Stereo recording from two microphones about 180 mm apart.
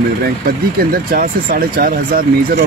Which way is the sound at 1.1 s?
55° right (ahead or behind).